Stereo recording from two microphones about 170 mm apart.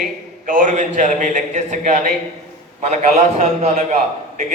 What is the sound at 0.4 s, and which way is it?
A man's voice, 50° right (ahead or behind).